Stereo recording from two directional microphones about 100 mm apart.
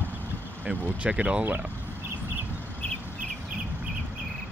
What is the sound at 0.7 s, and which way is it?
Speech, 10° right (ahead or behind).